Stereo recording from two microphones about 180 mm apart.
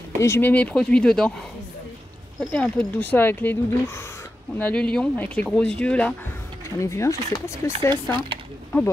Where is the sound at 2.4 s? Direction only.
5° left (ahead or behind).